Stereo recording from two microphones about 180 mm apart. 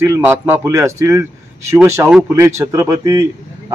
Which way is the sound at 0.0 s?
15° right (ahead or behind).